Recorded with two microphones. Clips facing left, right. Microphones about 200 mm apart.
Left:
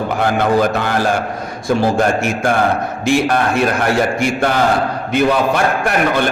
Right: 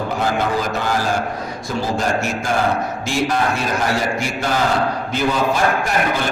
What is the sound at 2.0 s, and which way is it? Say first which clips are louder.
A man's voice: left 5 dB; 60° left (ahead or behind).